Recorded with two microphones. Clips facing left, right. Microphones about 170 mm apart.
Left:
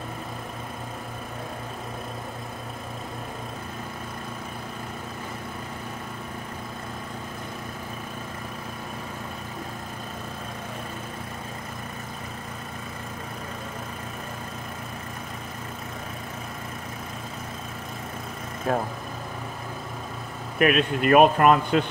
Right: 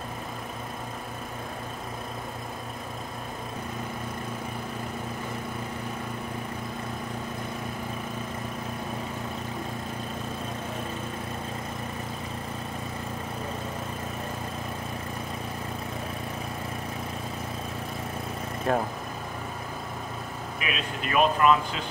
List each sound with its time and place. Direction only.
18.7 s speech: centre (ahead or behind)
20.5 s speech: 55° left (ahead or behind)